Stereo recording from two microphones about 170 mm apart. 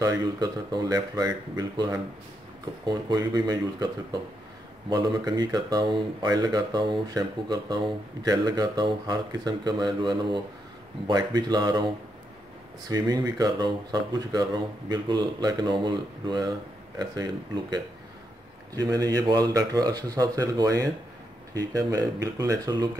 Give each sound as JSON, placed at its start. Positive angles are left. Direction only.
{"t": 0.0, "sound": "speech", "side_deg": -20}